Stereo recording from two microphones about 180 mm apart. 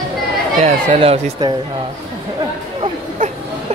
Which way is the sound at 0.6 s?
40° right (ahead or behind).